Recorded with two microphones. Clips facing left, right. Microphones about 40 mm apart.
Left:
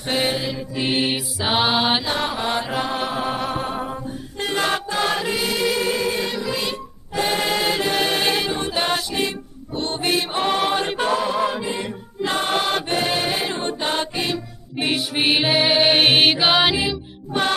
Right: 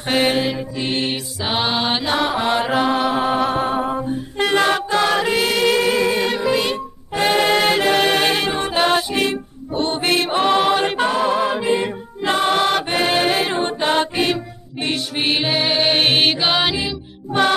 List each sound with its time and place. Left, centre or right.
0.1 s music: right
0.7 s mantra: centre
2.0 s mantra: right
3.0 s music: right
4.4 s music: right
4.9 s choir: right
5.8 s music: right
8.1 s music: right
10.8 s music: right
14.8 s music: centre
17.3 s music: right